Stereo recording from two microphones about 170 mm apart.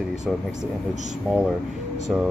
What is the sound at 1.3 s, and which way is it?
Speech, centre (ahead or behind).